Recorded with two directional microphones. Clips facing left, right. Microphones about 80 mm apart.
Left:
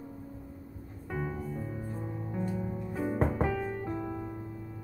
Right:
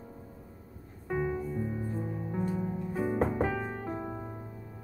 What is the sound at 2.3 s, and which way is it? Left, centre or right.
Music, right.